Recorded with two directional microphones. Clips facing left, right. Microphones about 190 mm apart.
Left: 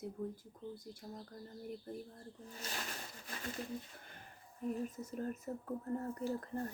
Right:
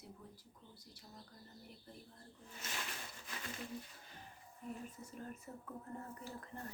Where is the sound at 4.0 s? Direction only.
55° left (ahead or behind).